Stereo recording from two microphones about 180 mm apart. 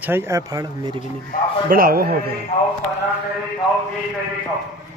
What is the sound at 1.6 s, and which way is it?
Speech, 55° right (ahead or behind).